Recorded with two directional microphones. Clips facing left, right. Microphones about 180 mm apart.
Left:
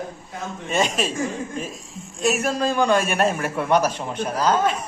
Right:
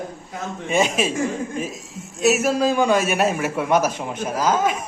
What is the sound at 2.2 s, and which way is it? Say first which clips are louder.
A man's voice: right 4 dB; 5° right (ahead or behind).